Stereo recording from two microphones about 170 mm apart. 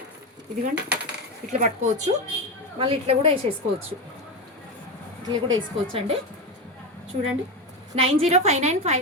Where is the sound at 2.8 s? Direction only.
35° right (ahead or behind).